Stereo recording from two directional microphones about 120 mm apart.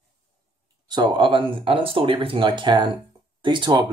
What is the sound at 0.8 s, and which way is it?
Speech, 40° right (ahead or behind).